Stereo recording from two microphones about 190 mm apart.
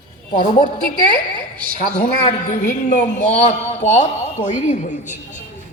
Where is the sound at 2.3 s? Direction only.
40° left (ahead or behind).